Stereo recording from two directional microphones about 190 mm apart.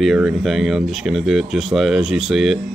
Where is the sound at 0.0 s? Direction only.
Centre (ahead or behind).